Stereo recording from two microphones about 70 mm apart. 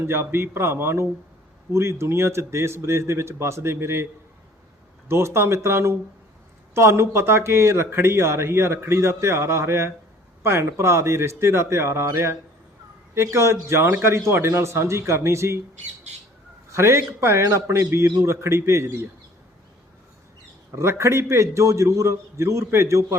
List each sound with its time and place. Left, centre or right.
0.0 s a man's voice: right
16.7 s a man's voice: right
20.7 s a man's voice: right